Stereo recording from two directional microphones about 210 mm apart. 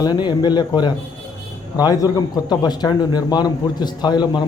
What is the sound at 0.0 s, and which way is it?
Speech, 20° left (ahead or behind).